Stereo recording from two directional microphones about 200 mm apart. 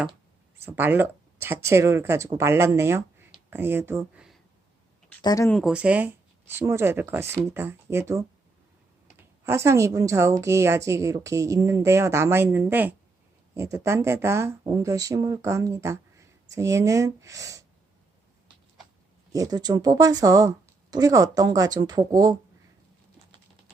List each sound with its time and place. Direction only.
0.6 s speech: 10° right (ahead or behind)
5.2 s speech: 20° left (ahead or behind)
5.5 s speech: centre (ahead or behind); by 17.7 s 15° right (ahead or behind)
19.3 s speech: 20° right (ahead or behind)